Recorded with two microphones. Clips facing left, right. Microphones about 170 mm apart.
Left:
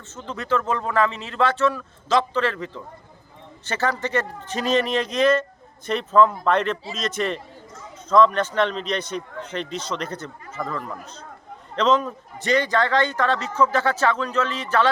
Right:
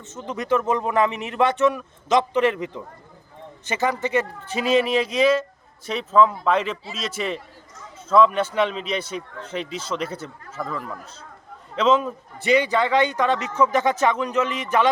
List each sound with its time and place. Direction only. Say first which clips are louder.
0.1 s a man's voice: right 2 dB; 15° right (ahead or behind)